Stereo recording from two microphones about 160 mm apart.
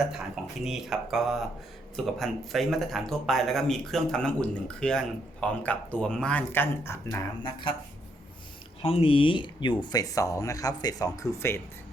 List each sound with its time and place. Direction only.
0.0 s speech: 5° right (ahead or behind); by 7.5 s 15° left (ahead or behind)
8.8 s speech: 35° left (ahead or behind); by 11.6 s 15° left (ahead or behind)